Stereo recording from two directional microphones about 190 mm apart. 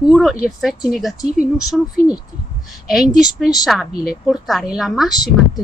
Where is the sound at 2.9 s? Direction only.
Centre (ahead or behind).